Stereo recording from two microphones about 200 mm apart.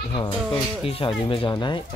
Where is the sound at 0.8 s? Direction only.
25° left (ahead or behind).